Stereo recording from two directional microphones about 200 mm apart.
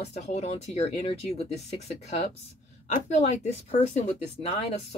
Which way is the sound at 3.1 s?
35° left (ahead or behind).